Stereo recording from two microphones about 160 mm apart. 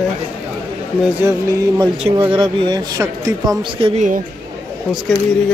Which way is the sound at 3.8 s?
45° right (ahead or behind).